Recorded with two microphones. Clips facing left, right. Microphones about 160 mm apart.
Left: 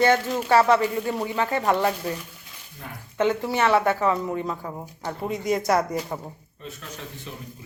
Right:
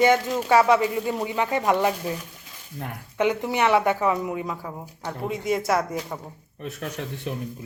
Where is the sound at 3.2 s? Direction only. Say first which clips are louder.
Even; 15° right (ahead or behind); by 6.2 s centre (ahead or behind).